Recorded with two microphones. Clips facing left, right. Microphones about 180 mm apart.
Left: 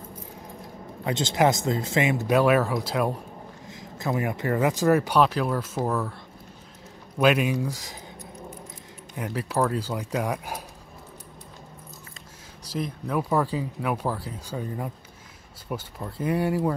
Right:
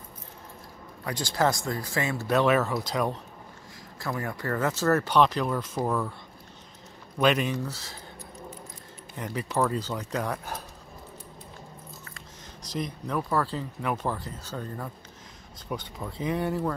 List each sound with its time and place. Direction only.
1.0 s speech: 25° left (ahead or behind); by 3.2 s 5° left (ahead or behind)
4.0 s speech: 20° left (ahead or behind); by 6.1 s 5° left (ahead or behind)
7.2 s speech: 10° left (ahead or behind)
9.1 s speech: 5° left (ahead or behind)
12.7 s speech: 5° left (ahead or behind)